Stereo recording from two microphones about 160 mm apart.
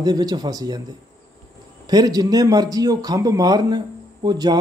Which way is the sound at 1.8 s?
25° right (ahead or behind).